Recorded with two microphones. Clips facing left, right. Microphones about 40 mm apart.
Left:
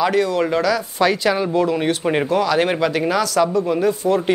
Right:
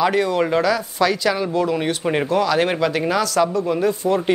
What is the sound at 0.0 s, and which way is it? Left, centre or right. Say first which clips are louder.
Speech: even; centre.